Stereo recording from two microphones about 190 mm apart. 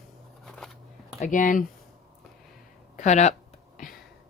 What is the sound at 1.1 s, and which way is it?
Speech, 40° left (ahead or behind).